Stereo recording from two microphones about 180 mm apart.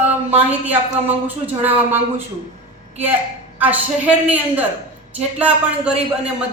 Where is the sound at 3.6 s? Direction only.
10° right (ahead or behind).